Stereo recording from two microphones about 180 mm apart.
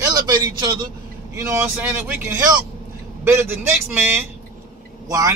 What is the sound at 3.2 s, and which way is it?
Speech, 15° right (ahead or behind).